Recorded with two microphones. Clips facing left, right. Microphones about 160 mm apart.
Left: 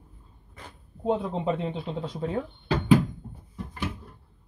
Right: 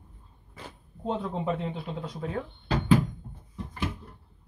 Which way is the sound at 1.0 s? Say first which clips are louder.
Left 4 dB; 20° left (ahead or behind).